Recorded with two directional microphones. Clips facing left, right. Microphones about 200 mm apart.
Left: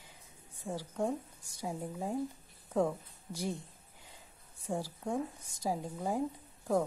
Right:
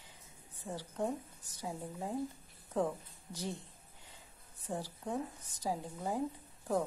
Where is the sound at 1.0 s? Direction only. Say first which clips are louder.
Left 2 dB; 10° left (ahead or behind).